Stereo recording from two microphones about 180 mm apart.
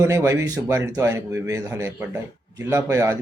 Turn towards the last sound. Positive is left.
turn(degrees=-15)  # may be behind; listen again after turning